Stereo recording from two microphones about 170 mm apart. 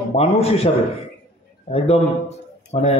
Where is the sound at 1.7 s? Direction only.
35° left (ahead or behind).